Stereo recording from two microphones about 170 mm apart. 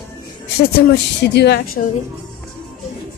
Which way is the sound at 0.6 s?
80° left.